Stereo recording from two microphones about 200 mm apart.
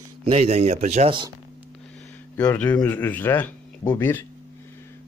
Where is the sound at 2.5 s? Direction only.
10° left (ahead or behind).